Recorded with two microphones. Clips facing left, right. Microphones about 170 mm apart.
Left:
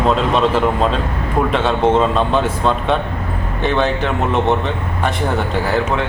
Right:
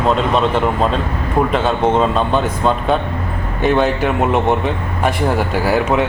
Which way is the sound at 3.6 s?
10° right (ahead or behind).